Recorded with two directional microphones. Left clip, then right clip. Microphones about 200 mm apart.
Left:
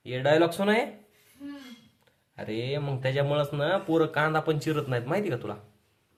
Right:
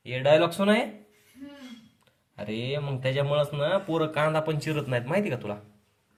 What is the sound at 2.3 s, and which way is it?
A man's voice, 15° left (ahead or behind).